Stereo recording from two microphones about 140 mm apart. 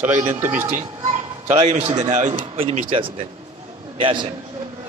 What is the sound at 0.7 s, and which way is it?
Speech, 65° right (ahead or behind).